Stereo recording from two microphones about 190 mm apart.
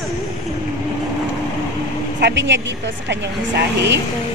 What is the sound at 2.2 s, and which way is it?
Speech, 65° right (ahead or behind).